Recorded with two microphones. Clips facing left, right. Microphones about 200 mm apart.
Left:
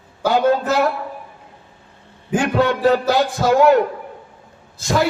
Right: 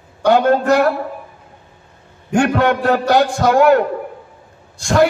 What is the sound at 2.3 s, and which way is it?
Speech, 65° right (ahead or behind).